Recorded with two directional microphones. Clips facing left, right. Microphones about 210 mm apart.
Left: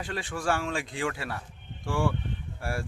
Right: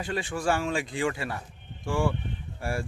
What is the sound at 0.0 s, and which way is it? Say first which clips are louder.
Speech: right 3 dB; centre (ahead or behind).